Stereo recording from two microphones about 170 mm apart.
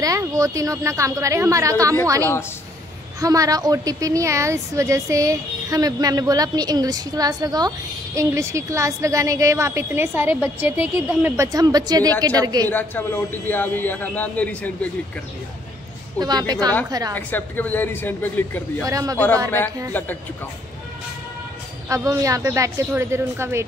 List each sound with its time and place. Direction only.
0.0 s a woman's voice: 20° right (ahead or behind)
3.2 s a woman's voice: 20° right (ahead or behind)
12.6 s a man's voice: 10° left (ahead or behind)
16.2 s a woman's voice: 25° right (ahead or behind)
17.1 s a man's voice: 10° left (ahead or behind)
18.9 s a woman's voice: 20° right (ahead or behind)
19.1 s a man's voice: 10° left (ahead or behind)
21.8 s a woman's voice: 20° right (ahead or behind)